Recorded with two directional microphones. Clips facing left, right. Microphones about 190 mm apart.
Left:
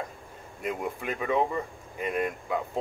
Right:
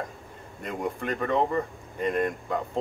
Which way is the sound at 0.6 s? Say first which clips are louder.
Right 1 dB; 5° left (ahead or behind).